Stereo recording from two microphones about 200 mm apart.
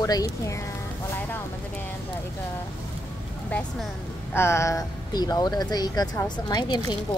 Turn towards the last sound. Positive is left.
turn(degrees=20)  # may be behind; listen again after turning